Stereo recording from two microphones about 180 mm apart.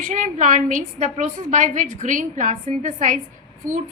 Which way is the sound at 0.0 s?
45° right (ahead or behind).